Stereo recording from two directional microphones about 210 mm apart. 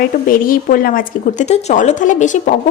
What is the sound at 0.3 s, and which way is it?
A woman's voice, 40° left (ahead or behind).